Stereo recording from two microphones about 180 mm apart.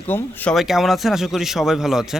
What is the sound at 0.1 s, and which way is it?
Speech, 10° left (ahead or behind).